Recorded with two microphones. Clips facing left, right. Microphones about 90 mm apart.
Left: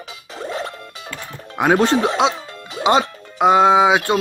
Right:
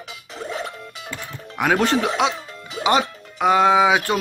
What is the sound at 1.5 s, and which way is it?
Music, 25° left (ahead or behind).